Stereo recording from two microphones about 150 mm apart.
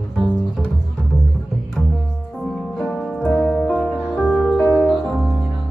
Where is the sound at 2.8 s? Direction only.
5° left (ahead or behind).